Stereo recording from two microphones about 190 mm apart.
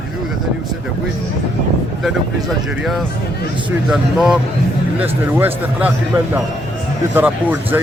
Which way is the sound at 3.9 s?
Centre (ahead or behind).